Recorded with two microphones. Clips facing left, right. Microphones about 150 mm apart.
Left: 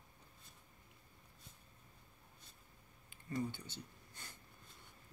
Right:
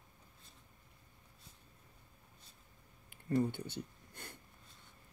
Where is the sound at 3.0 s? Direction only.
60° right (ahead or behind).